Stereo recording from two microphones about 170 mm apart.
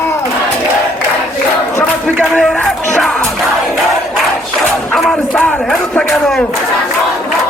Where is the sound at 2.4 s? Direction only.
Centre (ahead or behind).